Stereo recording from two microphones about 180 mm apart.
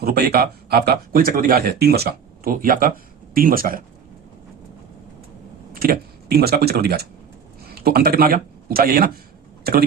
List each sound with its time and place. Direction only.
0.0 s speech: 60° right (ahead or behind)
5.7 s speech: 55° right (ahead or behind)